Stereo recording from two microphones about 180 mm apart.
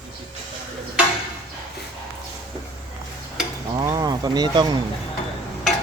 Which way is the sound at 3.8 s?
20° right (ahead or behind).